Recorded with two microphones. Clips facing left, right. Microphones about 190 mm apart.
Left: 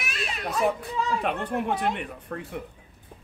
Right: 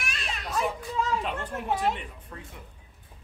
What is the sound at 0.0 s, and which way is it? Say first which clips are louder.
Children playing: left 4 dB; 5° left (ahead or behind).